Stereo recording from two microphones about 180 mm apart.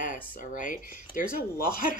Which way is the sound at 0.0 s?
50° left (ahead or behind).